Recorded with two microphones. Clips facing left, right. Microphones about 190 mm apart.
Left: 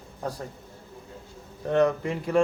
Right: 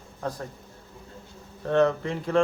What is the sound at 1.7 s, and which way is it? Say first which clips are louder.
Speech: even; 15° left (ahead or behind).